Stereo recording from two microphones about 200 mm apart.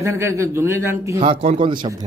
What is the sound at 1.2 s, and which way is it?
Speech, 30° right (ahead or behind).